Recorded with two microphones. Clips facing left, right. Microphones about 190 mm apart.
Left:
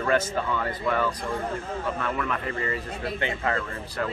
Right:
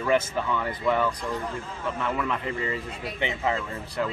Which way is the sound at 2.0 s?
20° right (ahead or behind).